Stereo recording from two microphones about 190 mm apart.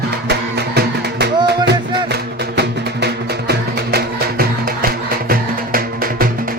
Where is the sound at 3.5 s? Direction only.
55° right (ahead or behind).